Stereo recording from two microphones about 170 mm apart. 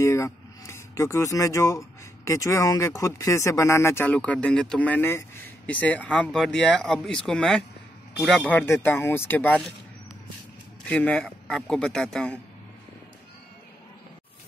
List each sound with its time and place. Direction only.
0.0 s speech: 15° left (ahead or behind)
10.9 s speech: 10° left (ahead or behind)